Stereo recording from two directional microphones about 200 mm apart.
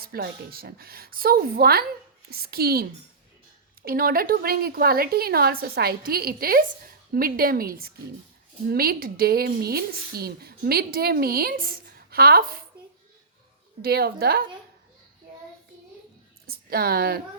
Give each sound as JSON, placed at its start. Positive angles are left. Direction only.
{"t": 0.0, "sound": "a woman's voice", "side_deg": -50}
{"t": 3.8, "sound": "a woman's voice", "side_deg": -45}
{"t": 13.8, "sound": "a woman's voice", "side_deg": -50}
{"t": 16.5, "sound": "a woman's voice", "side_deg": -50}